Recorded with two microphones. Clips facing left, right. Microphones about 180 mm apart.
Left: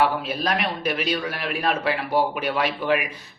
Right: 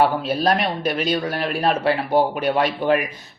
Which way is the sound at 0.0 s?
30° right (ahead or behind).